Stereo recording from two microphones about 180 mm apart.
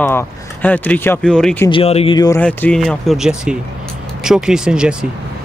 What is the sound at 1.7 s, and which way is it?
Speech, 30° left (ahead or behind).